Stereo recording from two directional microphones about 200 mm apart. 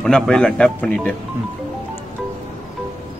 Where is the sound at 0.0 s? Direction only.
5° left (ahead or behind).